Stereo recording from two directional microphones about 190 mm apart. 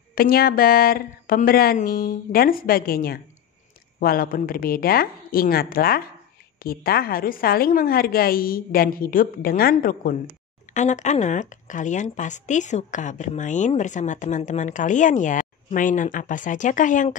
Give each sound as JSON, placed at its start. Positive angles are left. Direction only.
{"t": 0.1, "sound": "a woman's voice", "side_deg": 50}